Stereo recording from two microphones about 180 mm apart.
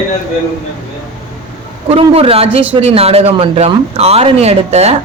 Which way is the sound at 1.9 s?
30° right (ahead or behind).